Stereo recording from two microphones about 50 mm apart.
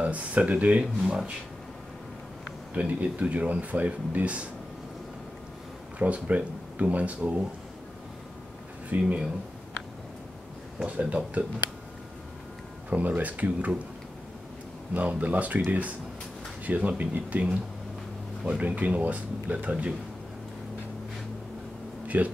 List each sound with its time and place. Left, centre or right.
0.0 s speech: right
0.7 s speech: centre
2.7 s speech: right
5.9 s speech: right
8.8 s speech: right
10.9 s speech: right
12.9 s speech: right
15.0 s speech: right
16.6 s speech: right
22.0 s a sound: right